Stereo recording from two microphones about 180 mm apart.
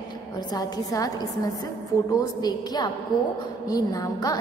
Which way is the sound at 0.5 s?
20° left (ahead or behind).